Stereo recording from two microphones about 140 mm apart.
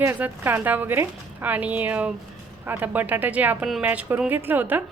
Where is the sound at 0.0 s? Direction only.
15° right (ahead or behind).